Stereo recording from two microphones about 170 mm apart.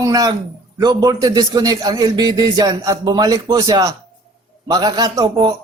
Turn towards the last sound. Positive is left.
turn(degrees=-25)  # may be behind; listen again after turning